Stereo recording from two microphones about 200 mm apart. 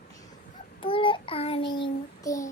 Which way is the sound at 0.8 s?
25° left (ahead or behind).